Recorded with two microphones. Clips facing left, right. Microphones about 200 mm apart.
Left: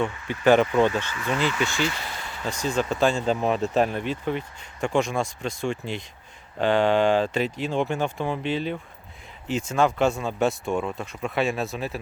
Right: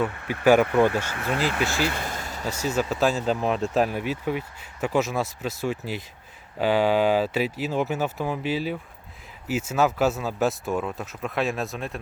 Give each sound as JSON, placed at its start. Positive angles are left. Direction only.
{"t": 0.1, "sound": "speech", "side_deg": -60}
{"t": 0.4, "sound": "speech", "side_deg": -10}
{"t": 1.1, "sound": "speech", "side_deg": -55}
{"t": 2.4, "sound": "speech", "side_deg": -10}